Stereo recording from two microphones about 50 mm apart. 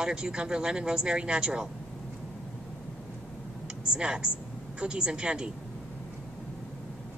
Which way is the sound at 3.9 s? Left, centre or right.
Centre.